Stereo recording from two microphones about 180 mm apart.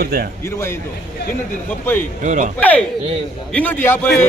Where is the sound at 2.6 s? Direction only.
10° left (ahead or behind).